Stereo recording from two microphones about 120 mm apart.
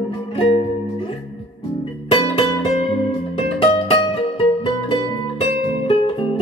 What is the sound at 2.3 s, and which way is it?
Music, 50° left (ahead or behind).